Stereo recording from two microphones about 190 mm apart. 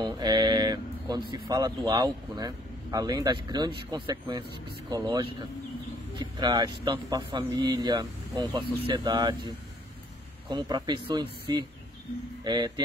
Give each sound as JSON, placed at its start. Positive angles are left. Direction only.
{"t": 0.0, "sound": "a sound", "side_deg": -25}
{"t": 1.9, "sound": "speech", "side_deg": -20}
{"t": 10.5, "sound": "speech", "side_deg": -25}